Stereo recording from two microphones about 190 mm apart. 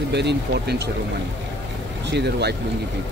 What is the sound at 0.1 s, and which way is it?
Speech, 65° right (ahead or behind).